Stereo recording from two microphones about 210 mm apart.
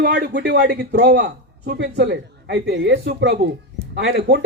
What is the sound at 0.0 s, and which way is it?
A man's voice, 55° right (ahead or behind).